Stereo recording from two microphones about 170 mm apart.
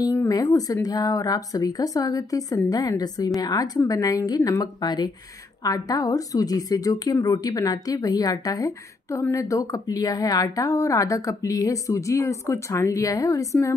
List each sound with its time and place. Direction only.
0.0 s a woman's voice: 20° left (ahead or behind)